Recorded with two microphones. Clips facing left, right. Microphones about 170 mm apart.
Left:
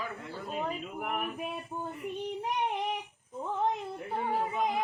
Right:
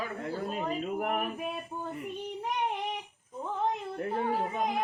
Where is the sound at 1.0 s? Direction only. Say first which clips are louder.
Right 3 dB; 40° right (ahead or behind).